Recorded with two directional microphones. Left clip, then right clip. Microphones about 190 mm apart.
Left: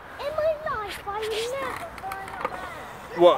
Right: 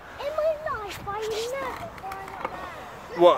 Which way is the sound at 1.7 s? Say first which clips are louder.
Left 2 dB; 25° left (ahead or behind).